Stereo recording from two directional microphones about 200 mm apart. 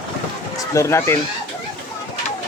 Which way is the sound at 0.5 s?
15° left (ahead or behind).